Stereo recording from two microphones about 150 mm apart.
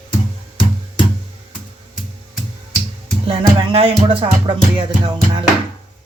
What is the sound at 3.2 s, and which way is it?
Music, 35° right (ahead or behind).